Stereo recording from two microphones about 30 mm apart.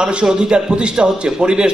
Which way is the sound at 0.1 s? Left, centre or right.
Right.